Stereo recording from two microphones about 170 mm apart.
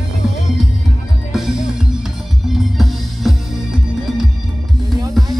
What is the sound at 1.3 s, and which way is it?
Music, centre (ahead or behind).